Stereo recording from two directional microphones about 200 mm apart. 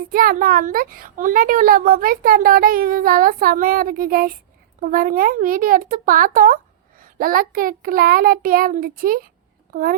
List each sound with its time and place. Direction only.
0.1 s a child's voice: 45° right (ahead or behind)